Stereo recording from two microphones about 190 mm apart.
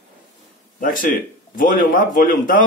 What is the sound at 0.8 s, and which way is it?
A man's voice, 45° left (ahead or behind).